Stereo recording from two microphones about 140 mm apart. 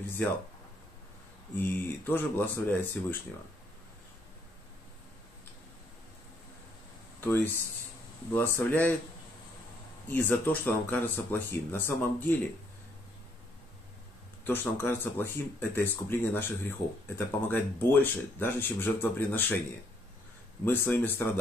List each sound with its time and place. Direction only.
1.6 s speech: 15° left (ahead or behind)
8.3 s speech: 15° left (ahead or behind)
10.0 s speech: 15° left (ahead or behind)
14.4 s speech: 15° left (ahead or behind)
20.6 s speech: 15° left (ahead or behind)